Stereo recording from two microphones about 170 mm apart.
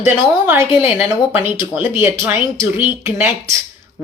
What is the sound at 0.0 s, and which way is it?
Speech, 15° right (ahead or behind).